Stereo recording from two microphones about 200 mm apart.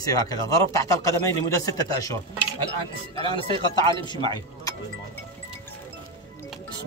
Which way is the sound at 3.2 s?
25° left (ahead or behind).